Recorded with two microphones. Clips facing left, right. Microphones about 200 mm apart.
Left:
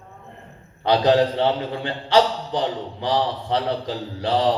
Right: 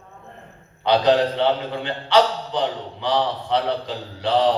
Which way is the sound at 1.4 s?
35° left (ahead or behind).